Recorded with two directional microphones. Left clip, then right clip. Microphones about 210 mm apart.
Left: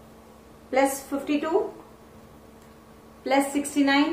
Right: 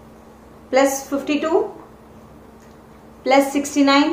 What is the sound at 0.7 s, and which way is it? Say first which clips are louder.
Speech: right 6 dB; 15° right (ahead or behind).